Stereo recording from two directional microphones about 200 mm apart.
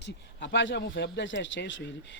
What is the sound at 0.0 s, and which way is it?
Speech, 60° left (ahead or behind).